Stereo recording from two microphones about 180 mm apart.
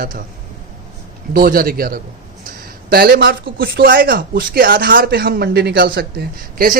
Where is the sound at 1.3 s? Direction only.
55° right (ahead or behind).